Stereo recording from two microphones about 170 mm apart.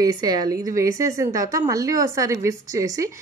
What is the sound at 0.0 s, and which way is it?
A woman's voice, 25° right (ahead or behind).